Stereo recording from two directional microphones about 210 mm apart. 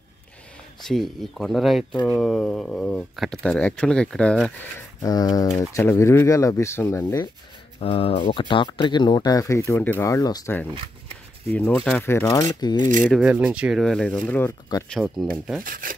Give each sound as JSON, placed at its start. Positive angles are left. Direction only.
{"t": 0.8, "sound": "speech", "side_deg": 0}
{"t": 5.0, "sound": "speech", "side_deg": 20}
{"t": 7.8, "sound": "speech", "side_deg": 25}
{"t": 10.7, "sound": "shuffling cards", "side_deg": -25}
{"t": 11.5, "sound": "speech", "side_deg": 5}
{"t": 13.1, "sound": "speech", "side_deg": -5}
{"t": 15.6, "sound": "speech", "side_deg": -40}